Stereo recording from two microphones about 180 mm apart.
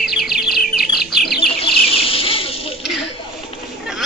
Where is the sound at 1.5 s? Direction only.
30° left (ahead or behind).